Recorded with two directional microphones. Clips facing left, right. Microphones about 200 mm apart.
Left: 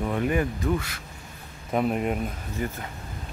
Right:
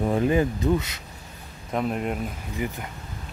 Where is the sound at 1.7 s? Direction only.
5° left (ahead or behind).